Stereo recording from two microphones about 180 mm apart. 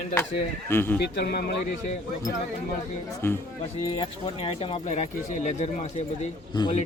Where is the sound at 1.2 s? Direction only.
60° left (ahead or behind).